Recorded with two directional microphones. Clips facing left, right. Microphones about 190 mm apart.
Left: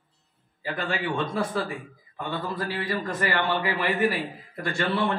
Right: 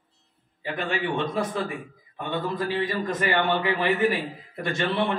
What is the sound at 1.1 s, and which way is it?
A man's voice, 20° right (ahead or behind).